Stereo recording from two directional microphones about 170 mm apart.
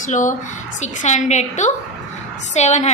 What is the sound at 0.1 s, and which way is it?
A woman's voice, 50° left (ahead or behind).